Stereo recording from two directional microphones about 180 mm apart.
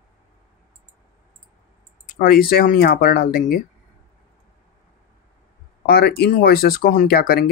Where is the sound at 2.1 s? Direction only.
55° left (ahead or behind).